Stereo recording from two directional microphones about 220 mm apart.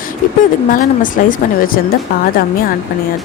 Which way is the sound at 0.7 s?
35° left (ahead or behind).